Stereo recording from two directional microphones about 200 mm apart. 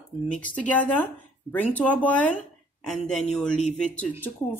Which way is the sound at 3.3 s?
5° left (ahead or behind).